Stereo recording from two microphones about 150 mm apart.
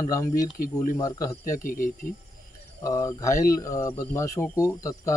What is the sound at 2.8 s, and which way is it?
Speech, 20° left (ahead or behind).